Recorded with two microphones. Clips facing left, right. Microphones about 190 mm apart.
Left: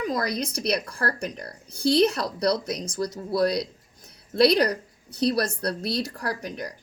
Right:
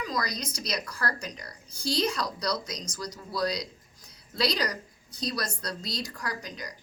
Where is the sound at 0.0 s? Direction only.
55° left (ahead or behind).